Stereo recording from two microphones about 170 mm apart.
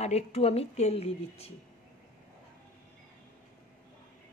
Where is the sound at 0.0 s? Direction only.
40° left (ahead or behind).